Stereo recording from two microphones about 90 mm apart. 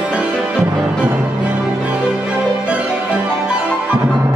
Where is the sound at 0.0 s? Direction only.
10° right (ahead or behind).